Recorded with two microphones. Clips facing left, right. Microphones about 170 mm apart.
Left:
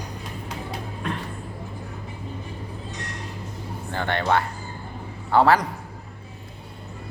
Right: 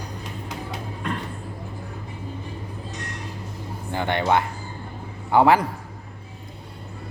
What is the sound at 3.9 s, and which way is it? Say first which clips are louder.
Speech: right 2 dB; 15° right (ahead or behind).